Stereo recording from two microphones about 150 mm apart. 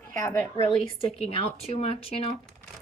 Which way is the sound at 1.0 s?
40° left (ahead or behind).